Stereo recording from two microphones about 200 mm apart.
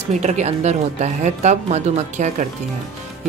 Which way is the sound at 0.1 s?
35° right (ahead or behind).